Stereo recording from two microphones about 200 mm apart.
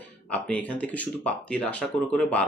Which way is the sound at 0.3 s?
5° left (ahead or behind).